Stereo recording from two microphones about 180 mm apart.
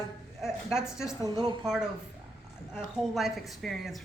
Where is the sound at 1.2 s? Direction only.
25° right (ahead or behind).